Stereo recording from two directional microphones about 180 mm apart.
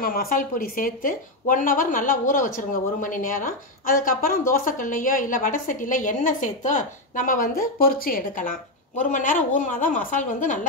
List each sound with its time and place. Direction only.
0.0 s speech: 55° left (ahead or behind)